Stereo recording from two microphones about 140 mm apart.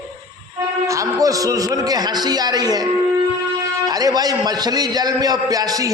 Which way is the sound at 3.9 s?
25° right (ahead or behind).